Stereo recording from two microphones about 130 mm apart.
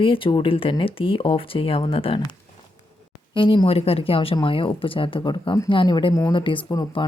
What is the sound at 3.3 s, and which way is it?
Speech, 40° left (ahead or behind).